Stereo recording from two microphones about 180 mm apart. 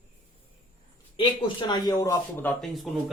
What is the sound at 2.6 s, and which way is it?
Speech, centre (ahead or behind).